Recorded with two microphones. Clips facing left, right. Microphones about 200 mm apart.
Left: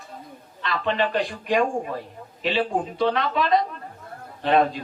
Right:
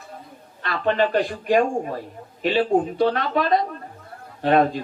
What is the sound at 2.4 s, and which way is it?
A man's voice, 45° right (ahead or behind).